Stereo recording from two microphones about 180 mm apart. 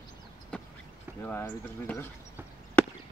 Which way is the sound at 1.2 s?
10° left (ahead or behind).